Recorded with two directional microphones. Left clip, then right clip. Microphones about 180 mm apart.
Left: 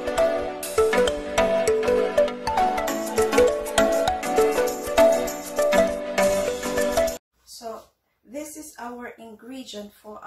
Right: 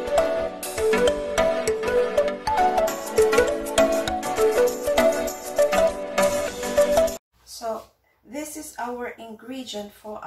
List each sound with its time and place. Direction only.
0.0 s music: centre (ahead or behind)